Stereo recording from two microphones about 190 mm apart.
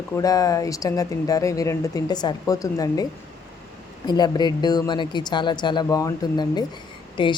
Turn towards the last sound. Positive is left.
turn(degrees=25)  # may be behind; listen again after turning